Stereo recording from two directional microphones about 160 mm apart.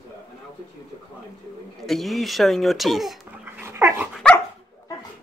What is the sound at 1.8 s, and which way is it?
Speech, centre (ahead or behind).